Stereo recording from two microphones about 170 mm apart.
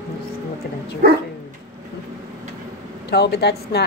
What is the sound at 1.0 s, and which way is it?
Dog, 65° right (ahead or behind).